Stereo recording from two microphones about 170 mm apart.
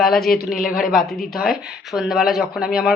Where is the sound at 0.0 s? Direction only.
Centre (ahead or behind).